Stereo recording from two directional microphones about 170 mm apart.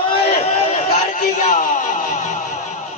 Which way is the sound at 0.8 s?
45° left (ahead or behind).